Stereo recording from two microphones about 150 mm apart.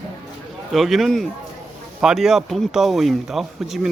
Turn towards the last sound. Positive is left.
turn(degrees=0)  # may be behind; listen again after turning